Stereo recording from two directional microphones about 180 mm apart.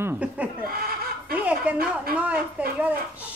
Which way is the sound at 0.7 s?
55° right (ahead or behind).